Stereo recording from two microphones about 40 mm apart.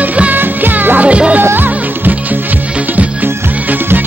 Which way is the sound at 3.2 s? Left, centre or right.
Right.